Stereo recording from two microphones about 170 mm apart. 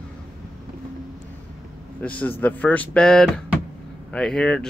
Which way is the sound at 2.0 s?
10° left (ahead or behind).